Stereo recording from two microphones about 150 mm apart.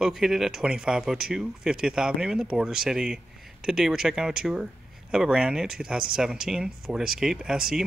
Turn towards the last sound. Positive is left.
turn(degrees=-5)  # may be behind; listen again after turning